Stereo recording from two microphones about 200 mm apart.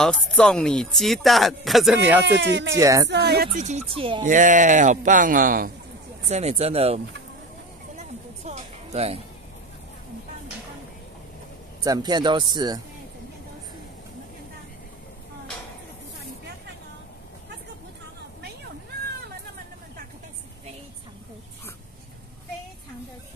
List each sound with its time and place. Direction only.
0.0 s speech: 5° left (ahead or behind)
2.2 s speech: 60° right (ahead or behind)
2.8 s speech: 15° right (ahead or behind)
3.1 s speech: 55° right (ahead or behind)
3.5 s speech: 35° right (ahead or behind)
4.2 s speech: 40° right (ahead or behind)
6.2 s speech: 35° right (ahead or behind)
8.5 s a sound: 30° right (ahead or behind)
11.8 s speech: 20° right (ahead or behind)